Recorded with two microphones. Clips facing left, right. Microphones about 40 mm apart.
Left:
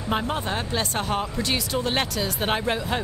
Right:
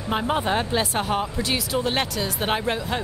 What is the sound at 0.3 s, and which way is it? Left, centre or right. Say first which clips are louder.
Speech: right 4 dB; centre.